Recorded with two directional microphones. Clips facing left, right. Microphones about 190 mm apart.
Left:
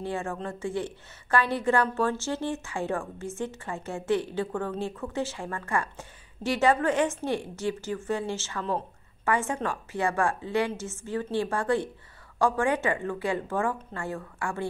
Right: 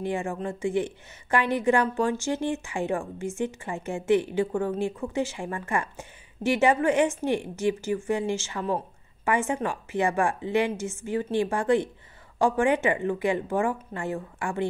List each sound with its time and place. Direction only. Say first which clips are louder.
0.0 s a woman's voice: right 3 dB; 15° right (ahead or behind)